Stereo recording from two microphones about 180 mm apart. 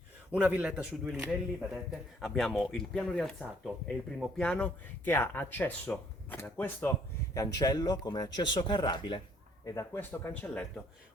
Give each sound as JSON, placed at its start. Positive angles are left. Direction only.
{"t": 0.3, "sound": "speech", "side_deg": -10}
{"t": 9.6, "sound": "speech", "side_deg": 15}